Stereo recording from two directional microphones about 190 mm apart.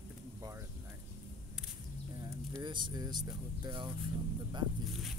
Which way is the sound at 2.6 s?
25° right (ahead or behind).